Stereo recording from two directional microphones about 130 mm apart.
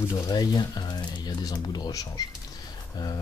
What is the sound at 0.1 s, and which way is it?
Speech, 35° left (ahead or behind).